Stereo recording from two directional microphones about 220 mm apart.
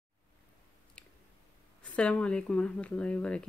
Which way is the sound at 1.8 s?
5° left (ahead or behind).